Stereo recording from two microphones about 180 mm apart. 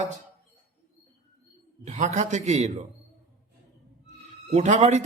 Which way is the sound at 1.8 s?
40° right (ahead or behind).